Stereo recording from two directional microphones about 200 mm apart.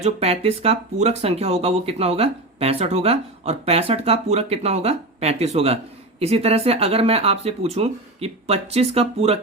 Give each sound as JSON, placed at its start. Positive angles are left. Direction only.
{"t": 0.0, "sound": "speech", "side_deg": -30}